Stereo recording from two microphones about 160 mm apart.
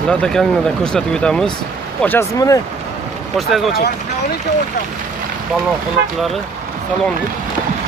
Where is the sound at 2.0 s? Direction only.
15° left (ahead or behind).